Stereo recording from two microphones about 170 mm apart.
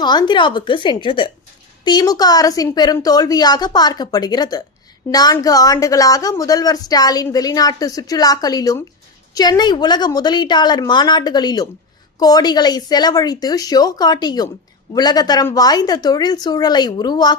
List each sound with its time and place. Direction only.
0.0 s a woman's voice: 25° left (ahead or behind)